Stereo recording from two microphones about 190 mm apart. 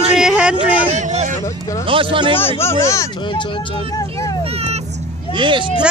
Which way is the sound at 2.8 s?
15° left (ahead or behind).